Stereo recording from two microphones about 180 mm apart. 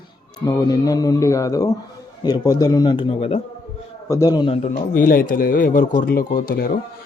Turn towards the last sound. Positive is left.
turn(degrees=60)  # may be behind; listen again after turning